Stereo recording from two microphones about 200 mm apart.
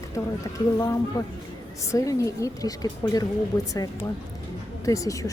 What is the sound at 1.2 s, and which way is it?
A woman's voice, 15° left (ahead or behind).